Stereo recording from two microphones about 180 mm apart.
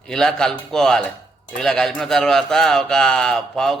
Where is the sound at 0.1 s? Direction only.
5° left (ahead or behind).